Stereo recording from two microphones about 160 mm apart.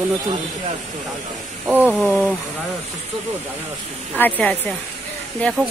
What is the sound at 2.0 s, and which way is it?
Speech, 5° left (ahead or behind).